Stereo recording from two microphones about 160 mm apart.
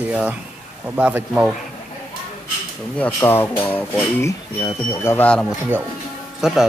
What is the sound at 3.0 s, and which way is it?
Speech, 10° left (ahead or behind).